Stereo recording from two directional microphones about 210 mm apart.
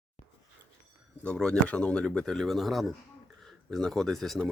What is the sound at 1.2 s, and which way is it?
Speech, 5° left (ahead or behind).